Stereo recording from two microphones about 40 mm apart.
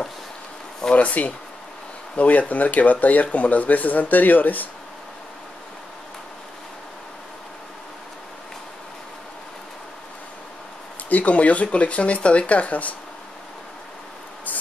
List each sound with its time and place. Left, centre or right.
0.9 s speech: left
11.1 s speech: left